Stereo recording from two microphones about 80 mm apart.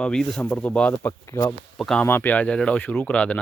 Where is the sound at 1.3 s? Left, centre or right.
Left.